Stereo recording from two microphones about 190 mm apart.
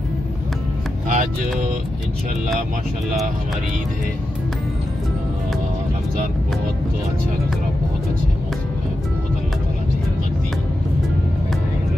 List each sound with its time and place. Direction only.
1.0 s music: 40° right (ahead or behind)